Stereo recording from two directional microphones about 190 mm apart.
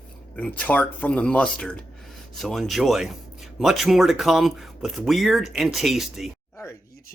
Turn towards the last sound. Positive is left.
turn(degrees=0)  # may be behind; listen again after turning